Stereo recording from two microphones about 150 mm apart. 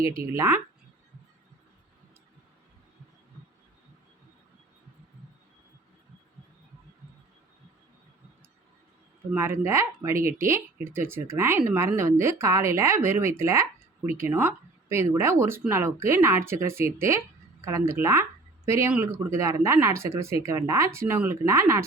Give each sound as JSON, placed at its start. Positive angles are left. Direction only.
{"t": 0.0, "sound": "speech", "side_deg": -20}
{"t": 9.3, "sound": "speech", "side_deg": -15}